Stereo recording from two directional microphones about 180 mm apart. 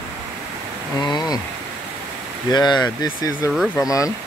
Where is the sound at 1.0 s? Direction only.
25° left (ahead or behind).